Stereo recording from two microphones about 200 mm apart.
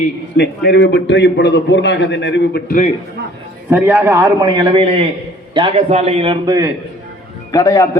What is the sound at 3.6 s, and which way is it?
A man's voice, 10° right (ahead or behind).